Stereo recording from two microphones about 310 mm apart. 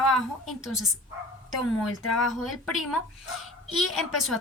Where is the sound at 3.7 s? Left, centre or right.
Centre.